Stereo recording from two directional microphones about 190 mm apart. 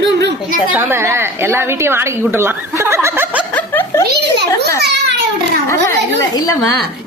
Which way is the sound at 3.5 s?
10° left (ahead or behind).